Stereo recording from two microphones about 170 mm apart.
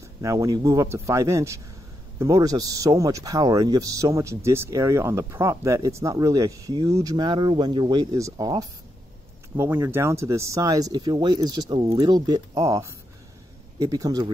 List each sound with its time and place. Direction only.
0.2 s speech: 20° right (ahead or behind)